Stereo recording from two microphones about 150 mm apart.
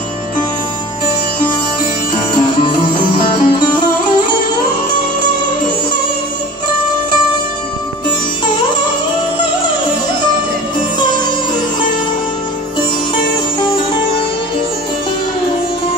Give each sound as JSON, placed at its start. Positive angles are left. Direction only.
{"t": 2.3, "sound": "music", "side_deg": 30}